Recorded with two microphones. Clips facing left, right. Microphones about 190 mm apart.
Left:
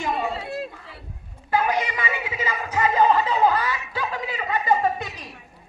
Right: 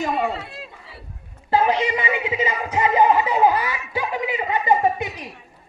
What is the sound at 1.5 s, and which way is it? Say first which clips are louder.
Speech: right 4 dB; 25° right (ahead or behind).